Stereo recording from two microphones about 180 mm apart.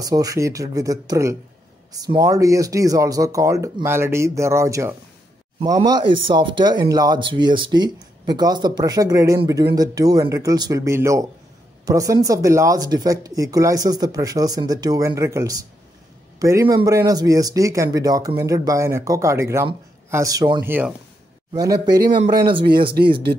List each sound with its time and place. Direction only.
0.0 s speech: 20° right (ahead or behind)
20.6 s speech: 10° right (ahead or behind)
21.5 s speech: 20° right (ahead or behind)
22.7 s speech: 60° right (ahead or behind)